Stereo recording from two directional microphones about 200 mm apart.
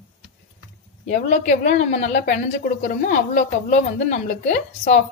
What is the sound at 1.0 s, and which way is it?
A woman's voice, 40° left (ahead or behind).